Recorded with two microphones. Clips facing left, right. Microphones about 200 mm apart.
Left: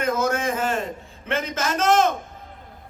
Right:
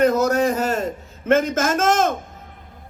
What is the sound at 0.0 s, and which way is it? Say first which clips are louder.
A man's voice: right 6 dB; 40° right (ahead or behind).